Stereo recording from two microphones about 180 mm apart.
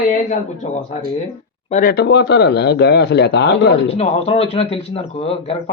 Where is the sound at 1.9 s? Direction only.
70° left (ahead or behind).